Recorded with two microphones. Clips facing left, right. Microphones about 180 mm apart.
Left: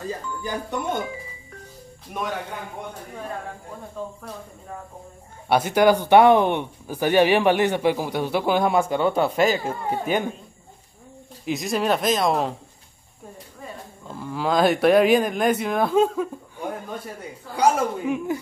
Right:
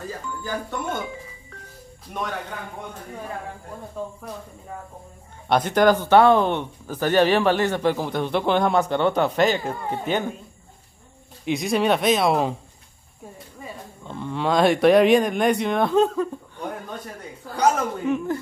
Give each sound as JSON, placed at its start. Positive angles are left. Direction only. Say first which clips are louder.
{"t": 0.4, "sound": "speech", "louder": "even", "side_deg": 15}
{"t": 5.5, "sound": "speech", "louder": "even", "side_deg": 10}
{"t": 11.4, "sound": "speech", "louder": "right 2 dB", "side_deg": 0}
{"t": 14.0, "sound": "speech", "louder": "right 1 dB", "side_deg": 5}